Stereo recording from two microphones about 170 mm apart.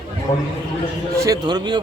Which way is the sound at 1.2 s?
20° right (ahead or behind).